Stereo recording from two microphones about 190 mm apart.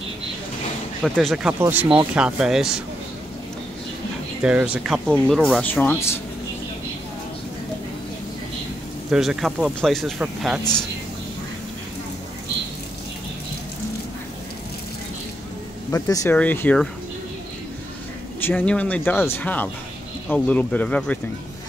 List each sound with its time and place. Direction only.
1.0 s speech: centre (ahead or behind)
4.4 s speech: 5° right (ahead or behind); by 6.1 s 10° left (ahead or behind)
9.1 s speech: centre (ahead or behind)
15.9 s speech: 15° left (ahead or behind)
18.4 s speech: 10° left (ahead or behind)